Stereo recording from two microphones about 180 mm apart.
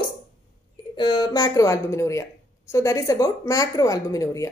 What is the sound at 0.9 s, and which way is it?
A woman's voice, 25° left (ahead or behind).